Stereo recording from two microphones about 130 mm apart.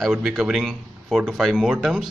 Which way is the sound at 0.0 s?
5° right (ahead or behind).